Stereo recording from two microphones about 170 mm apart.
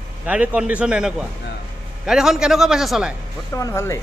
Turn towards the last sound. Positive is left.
turn(degrees=15)  # may be behind; listen again after turning